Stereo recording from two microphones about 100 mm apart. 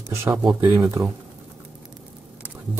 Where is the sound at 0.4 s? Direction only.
55° right (ahead or behind).